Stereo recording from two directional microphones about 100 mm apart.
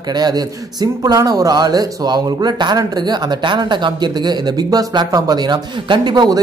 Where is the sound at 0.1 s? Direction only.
40° right (ahead or behind).